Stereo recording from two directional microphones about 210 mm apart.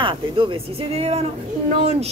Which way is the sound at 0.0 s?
25° right (ahead or behind).